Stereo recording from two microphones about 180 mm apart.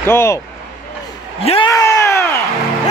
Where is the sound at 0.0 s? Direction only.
15° left (ahead or behind).